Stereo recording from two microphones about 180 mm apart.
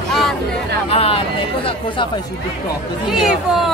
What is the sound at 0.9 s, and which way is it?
Speech, 30° left (ahead or behind).